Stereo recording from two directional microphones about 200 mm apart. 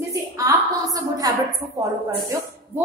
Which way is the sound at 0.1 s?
15° right (ahead or behind).